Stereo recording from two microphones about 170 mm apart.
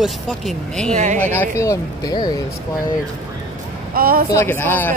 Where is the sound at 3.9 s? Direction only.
60° right (ahead or behind).